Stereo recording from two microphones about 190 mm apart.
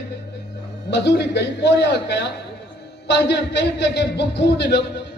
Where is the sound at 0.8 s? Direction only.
65° left (ahead or behind).